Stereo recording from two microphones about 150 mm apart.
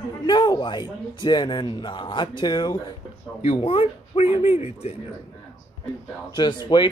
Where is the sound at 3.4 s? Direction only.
40° left (ahead or behind).